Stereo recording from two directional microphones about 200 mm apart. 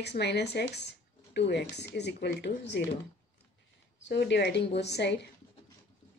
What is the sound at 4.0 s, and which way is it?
Speech, 60° left (ahead or behind).